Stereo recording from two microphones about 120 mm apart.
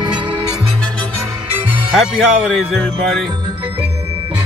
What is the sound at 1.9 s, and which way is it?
Speech, 5° right (ahead or behind).